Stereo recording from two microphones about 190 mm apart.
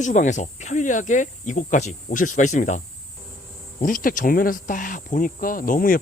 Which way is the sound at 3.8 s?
45° left (ahead or behind).